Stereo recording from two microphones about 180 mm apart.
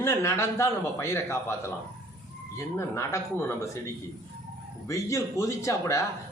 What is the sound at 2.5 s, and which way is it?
A man's voice, 15° left (ahead or behind).